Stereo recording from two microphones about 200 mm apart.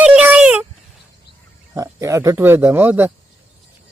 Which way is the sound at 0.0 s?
5° right (ahead or behind).